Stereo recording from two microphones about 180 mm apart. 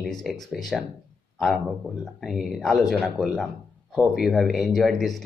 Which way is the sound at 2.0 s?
Centre (ahead or behind).